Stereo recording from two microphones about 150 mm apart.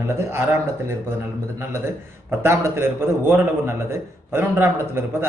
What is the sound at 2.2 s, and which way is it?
A man's voice, 15° right (ahead or behind).